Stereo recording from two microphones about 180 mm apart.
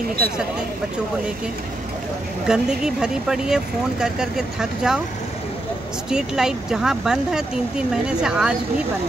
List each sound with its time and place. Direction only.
2.4 s speech: 5° right (ahead or behind)
6.0 s speech: 5° right (ahead or behind)